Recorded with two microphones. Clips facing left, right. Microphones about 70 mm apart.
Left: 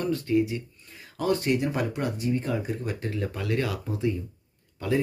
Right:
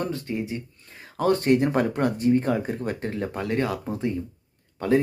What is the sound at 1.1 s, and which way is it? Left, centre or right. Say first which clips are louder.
Speech: right 5 dB; right.